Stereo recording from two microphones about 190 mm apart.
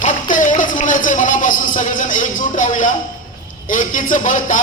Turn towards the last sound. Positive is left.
turn(degrees=40)  # may be behind; listen again after turning